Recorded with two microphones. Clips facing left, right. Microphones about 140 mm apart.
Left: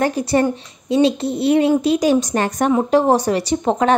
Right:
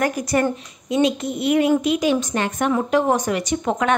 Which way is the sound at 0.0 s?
30° left (ahead or behind).